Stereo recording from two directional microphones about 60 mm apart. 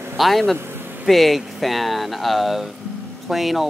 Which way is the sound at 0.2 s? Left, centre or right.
Centre.